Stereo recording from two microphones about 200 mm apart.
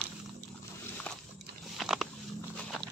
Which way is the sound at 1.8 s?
Centre (ahead or behind).